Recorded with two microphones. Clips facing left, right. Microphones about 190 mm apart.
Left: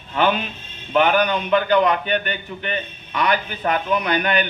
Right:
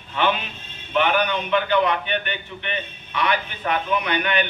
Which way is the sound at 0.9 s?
40° left (ahead or behind).